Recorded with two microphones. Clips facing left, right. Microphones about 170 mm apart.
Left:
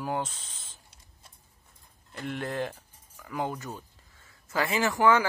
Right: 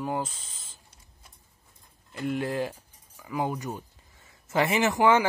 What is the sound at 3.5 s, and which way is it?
Speech, 15° right (ahead or behind).